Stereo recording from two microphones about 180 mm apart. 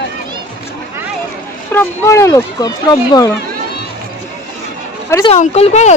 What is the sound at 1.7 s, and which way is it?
Speech, 10° left (ahead or behind).